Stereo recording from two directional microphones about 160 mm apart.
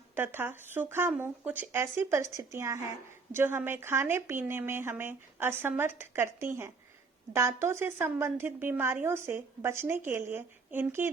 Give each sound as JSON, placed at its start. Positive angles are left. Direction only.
{"t": 0.1, "sound": "a woman's voice", "side_deg": -15}